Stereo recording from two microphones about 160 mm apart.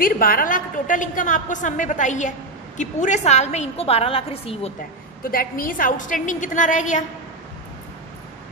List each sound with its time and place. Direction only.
0.0 s a woman's voice: 65° left (ahead or behind); by 4.7 s 40° left (ahead or behind)
5.2 s a woman's voice: 65° left (ahead or behind)